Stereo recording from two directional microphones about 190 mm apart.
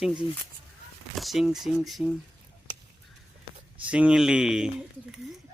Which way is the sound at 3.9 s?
5° right (ahead or behind).